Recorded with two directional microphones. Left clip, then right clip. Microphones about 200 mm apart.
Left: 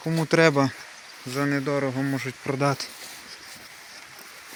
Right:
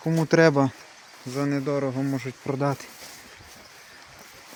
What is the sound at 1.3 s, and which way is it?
Speech, centre (ahead or behind).